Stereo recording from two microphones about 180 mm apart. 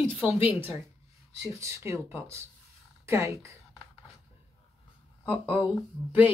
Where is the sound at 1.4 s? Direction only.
15° right (ahead or behind).